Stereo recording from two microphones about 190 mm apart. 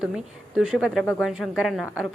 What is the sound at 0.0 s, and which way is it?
A woman's voice, 5° right (ahead or behind).